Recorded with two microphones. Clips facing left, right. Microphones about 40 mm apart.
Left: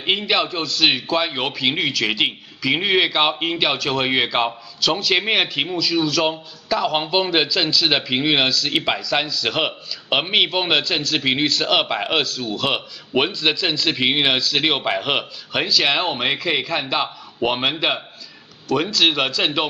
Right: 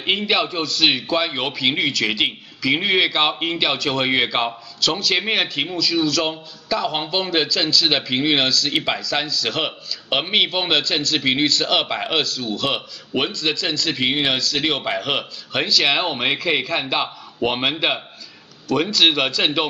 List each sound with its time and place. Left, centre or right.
0.0 s a man's voice: centre
15.5 s a man's voice: centre